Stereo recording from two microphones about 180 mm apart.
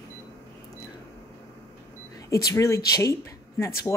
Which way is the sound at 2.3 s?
15° left (ahead or behind).